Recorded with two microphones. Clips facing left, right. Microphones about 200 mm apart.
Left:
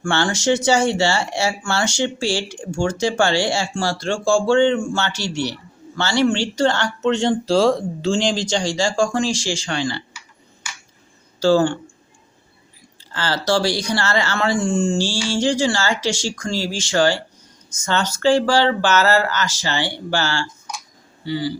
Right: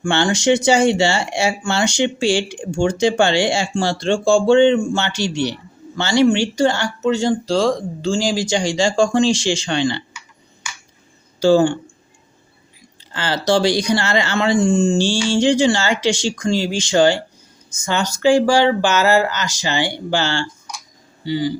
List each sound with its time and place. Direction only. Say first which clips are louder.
0.0 s speech: right 3 dB; 15° right (ahead or behind)
11.3 s speech: right 2 dB; 15° right (ahead or behind)
13.1 s speech: right 2 dB; 15° right (ahead or behind)